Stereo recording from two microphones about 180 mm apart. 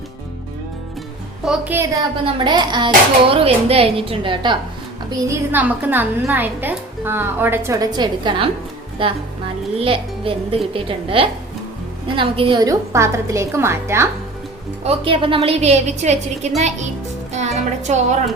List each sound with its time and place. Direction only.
1.5 s a woman's voice: 10° right (ahead or behind)
2.2 s speech: 25° right (ahead or behind)
5.1 s a woman's voice: 15° right (ahead or behind)
14.8 s speech: 30° right (ahead or behind)
17.3 s music: 40° right (ahead or behind)